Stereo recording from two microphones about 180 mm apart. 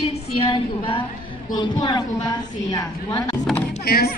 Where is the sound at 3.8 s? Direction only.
60° left (ahead or behind).